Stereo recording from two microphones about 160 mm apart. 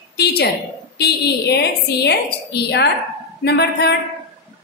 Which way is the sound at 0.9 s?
90° left.